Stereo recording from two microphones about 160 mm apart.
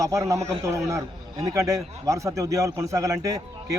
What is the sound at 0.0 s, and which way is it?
A man's voice, 20° right (ahead or behind).